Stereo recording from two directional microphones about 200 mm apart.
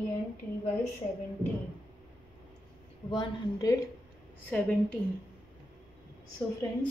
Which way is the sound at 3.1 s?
20° left (ahead or behind).